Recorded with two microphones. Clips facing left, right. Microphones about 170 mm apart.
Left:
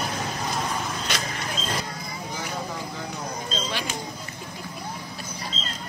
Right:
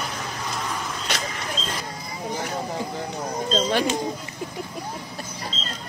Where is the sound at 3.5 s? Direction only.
50° right (ahead or behind).